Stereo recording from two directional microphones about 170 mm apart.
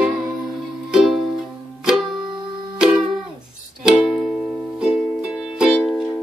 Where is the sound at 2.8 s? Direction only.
5° right (ahead or behind).